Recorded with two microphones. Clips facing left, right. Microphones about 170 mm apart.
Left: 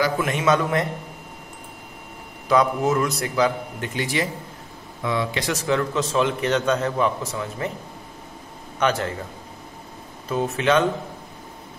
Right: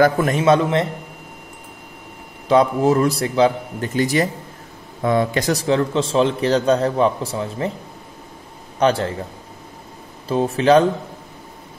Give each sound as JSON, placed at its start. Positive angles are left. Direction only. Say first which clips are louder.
{"t": 0.0, "sound": "speech", "louder": "right 6 dB", "side_deg": -40}
{"t": 2.4, "sound": "speech", "louder": "right 4 dB", "side_deg": -30}
{"t": 3.9, "sound": "speech", "louder": "right 7 dB", "side_deg": -40}
{"t": 8.7, "sound": "a man's voice", "louder": "right 5 dB", "side_deg": -30}
{"t": 10.2, "sound": "speech", "louder": "right 5 dB", "side_deg": -30}